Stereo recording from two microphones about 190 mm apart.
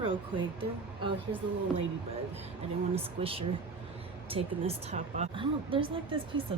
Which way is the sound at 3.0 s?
30° right (ahead or behind).